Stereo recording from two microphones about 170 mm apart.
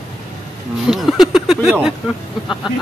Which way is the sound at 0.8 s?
Centre (ahead or behind).